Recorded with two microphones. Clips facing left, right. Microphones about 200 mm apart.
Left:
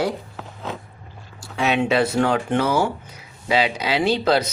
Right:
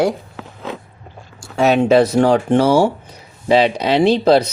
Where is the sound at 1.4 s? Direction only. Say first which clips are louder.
Right 7 dB; 45° right (ahead or behind).